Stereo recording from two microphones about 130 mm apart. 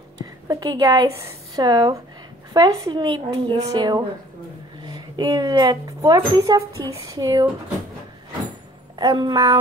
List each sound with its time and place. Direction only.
0.5 s speech: 25° right (ahead or behind)
8.9 s speech: 35° right (ahead or behind)